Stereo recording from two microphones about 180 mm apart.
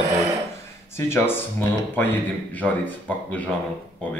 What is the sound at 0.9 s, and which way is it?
Speech, 15° left (ahead or behind).